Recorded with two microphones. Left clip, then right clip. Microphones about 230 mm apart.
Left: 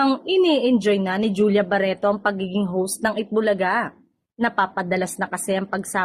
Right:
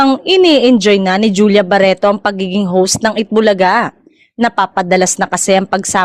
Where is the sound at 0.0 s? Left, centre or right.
Right.